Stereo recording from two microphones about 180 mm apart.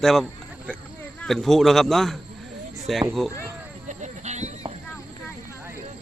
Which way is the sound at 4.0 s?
40° right (ahead or behind).